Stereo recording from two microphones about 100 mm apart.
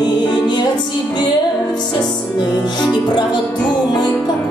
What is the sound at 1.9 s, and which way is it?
Music, 45° left (ahead or behind).